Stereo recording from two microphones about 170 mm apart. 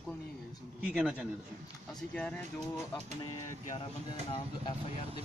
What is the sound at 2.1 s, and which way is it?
Speech, 5° left (ahead or behind).